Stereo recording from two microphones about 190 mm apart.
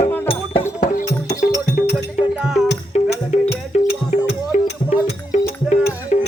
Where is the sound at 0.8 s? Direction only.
40° left (ahead or behind).